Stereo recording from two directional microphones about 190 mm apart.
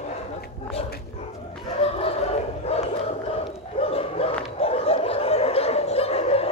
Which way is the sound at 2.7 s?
30° left (ahead or behind).